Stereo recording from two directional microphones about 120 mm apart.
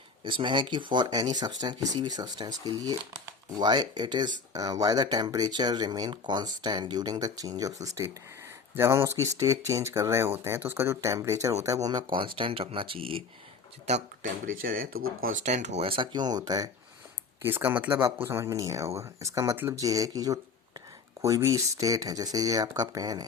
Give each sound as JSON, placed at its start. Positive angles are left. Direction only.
{"t": 0.3, "sound": "speech", "side_deg": -40}
{"t": 13.8, "sound": "speech", "side_deg": -80}
{"t": 15.8, "sound": "speech", "side_deg": -45}
{"t": 17.4, "sound": "speech", "side_deg": -15}